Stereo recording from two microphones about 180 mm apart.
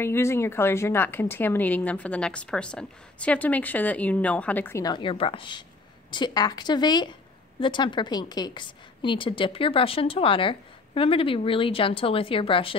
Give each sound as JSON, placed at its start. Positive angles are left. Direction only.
{"t": 0.0, "sound": "a woman's voice", "side_deg": 15}
{"t": 4.8, "sound": "a woman's voice", "side_deg": 25}